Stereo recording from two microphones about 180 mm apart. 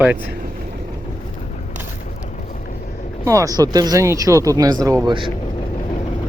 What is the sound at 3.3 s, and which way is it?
Speech, 20° right (ahead or behind).